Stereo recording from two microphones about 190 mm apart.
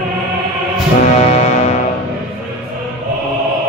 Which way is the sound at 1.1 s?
35° left (ahead or behind).